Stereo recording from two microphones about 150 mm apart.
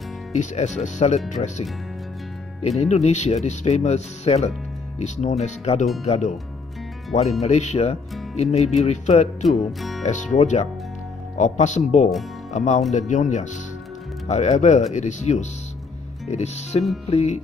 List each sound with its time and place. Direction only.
0.3 s speech: 50° left (ahead or behind)
2.8 s speech: 50° left (ahead or behind)
9.7 s speech: centre (ahead or behind)
10.0 s speech: 50° left (ahead or behind)